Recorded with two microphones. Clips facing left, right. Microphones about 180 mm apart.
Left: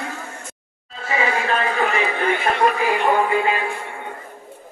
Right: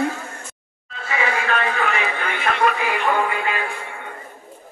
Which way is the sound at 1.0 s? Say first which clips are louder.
Left 2 dB; 30° left (ahead or behind).